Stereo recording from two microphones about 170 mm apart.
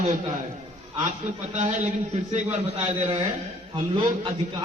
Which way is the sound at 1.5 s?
45° right (ahead or behind).